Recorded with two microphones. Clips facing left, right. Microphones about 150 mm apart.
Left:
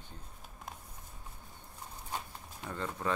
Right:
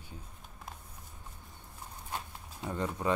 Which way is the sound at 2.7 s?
15° right (ahead or behind).